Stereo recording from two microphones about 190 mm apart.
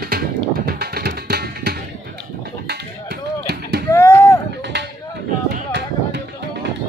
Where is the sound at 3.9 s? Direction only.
15° left (ahead or behind).